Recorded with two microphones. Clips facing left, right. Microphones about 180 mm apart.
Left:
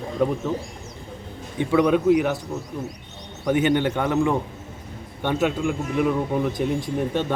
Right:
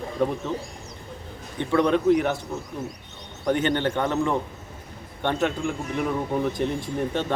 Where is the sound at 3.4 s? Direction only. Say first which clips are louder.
Left 3 dB; 10° left (ahead or behind).